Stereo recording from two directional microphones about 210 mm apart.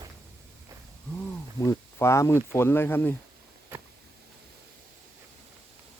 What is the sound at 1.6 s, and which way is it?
Speech, 15° left (ahead or behind).